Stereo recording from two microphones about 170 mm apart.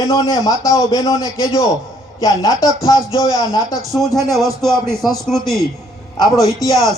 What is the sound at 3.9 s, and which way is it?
Speech, centre (ahead or behind).